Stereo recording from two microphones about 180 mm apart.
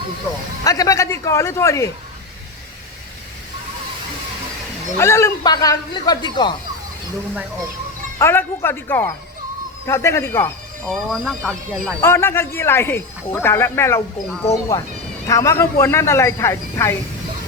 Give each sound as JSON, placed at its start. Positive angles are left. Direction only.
{"t": 0.6, "sound": "speech", "side_deg": 20}
{"t": 4.9, "sound": "speech", "side_deg": 15}
{"t": 8.2, "sound": "a man's voice", "side_deg": 10}
{"t": 10.9, "sound": "speech", "side_deg": 0}
{"t": 12.0, "sound": "speech", "side_deg": 15}